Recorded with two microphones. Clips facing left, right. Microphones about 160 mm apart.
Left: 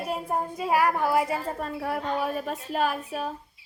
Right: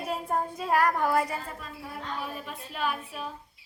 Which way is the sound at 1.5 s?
55° left (ahead or behind).